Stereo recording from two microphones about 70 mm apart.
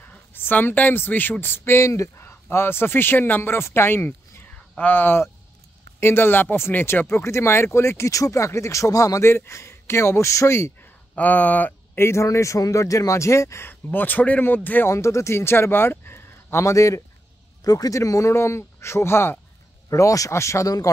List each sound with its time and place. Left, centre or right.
0.0 s speech: left
9.2 s speech: left
11.1 s speech: left
12.0 s speech: left
13.9 s speech: left
14.9 s speech: left
17.6 s speech: left
19.9 s speech: left